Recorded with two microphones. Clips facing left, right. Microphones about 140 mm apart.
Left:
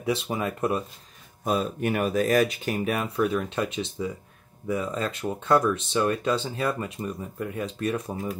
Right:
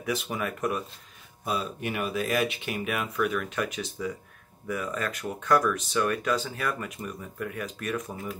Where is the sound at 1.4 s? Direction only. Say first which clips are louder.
Left 5 dB; 45° left (ahead or behind).